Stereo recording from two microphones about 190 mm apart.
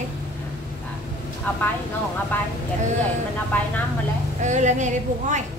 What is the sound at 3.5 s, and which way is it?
Speech, 10° left (ahead or behind).